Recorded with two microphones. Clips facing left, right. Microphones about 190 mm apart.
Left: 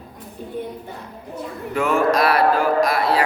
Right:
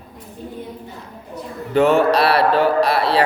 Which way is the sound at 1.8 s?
30° right (ahead or behind).